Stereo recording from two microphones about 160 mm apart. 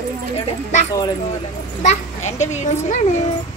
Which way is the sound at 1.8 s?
50° left (ahead or behind).